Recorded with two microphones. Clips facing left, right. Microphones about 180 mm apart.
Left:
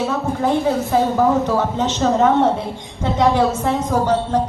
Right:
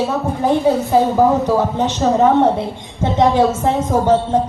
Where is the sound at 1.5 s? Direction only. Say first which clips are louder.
Right 3 dB; 15° right (ahead or behind).